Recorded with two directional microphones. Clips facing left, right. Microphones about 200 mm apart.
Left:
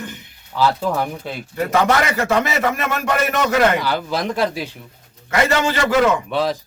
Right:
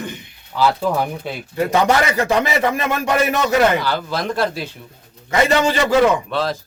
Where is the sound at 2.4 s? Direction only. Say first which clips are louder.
Right 2 dB; 30° right (ahead or behind).